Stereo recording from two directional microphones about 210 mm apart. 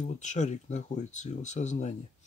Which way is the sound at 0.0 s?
35° left (ahead or behind).